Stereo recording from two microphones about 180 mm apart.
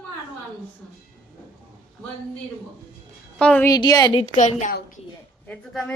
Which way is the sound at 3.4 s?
5° left (ahead or behind).